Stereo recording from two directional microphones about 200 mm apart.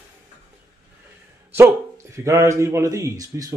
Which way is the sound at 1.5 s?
15° right (ahead or behind).